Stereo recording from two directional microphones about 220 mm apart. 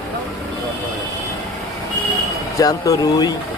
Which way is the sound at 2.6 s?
15° left (ahead or behind).